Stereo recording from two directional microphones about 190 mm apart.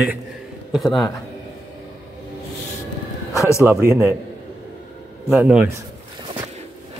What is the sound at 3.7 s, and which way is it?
Speech, 10° right (ahead or behind).